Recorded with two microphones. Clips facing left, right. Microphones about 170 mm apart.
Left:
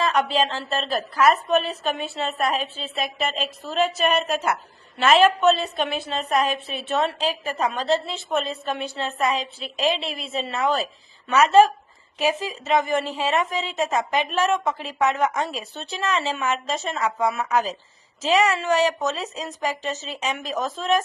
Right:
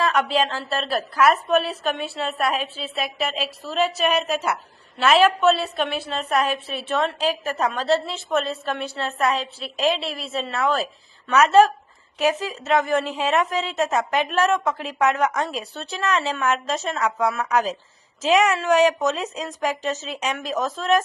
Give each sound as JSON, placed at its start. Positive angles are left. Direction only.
{"t": 0.3, "sound": "a woman's voice", "side_deg": -5}
{"t": 8.0, "sound": "a woman's voice", "side_deg": 0}